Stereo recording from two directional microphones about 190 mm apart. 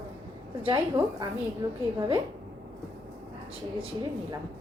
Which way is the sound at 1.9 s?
25° right (ahead or behind).